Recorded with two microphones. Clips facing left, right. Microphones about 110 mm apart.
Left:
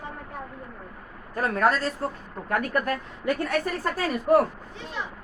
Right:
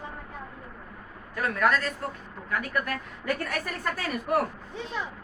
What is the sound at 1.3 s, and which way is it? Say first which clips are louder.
A woman's voice: left 2 dB; 40° left (ahead or behind).